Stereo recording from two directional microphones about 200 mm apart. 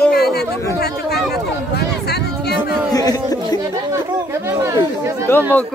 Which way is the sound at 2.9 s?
20° left (ahead or behind).